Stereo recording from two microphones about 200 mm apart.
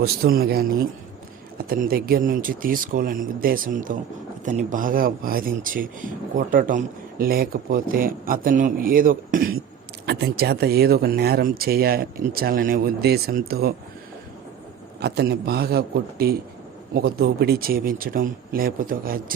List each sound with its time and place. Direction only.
0.0 s speech: 50° right (ahead or behind)
15.0 s speech: 55° right (ahead or behind)